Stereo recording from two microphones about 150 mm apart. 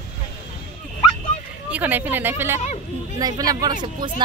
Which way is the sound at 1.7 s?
10° right (ahead or behind).